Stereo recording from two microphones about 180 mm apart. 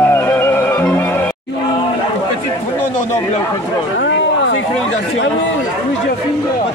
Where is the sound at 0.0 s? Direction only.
10° left (ahead or behind).